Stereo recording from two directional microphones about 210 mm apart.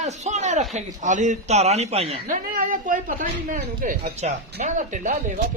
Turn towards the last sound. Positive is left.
turn(degrees=-40)  # may be behind; listen again after turning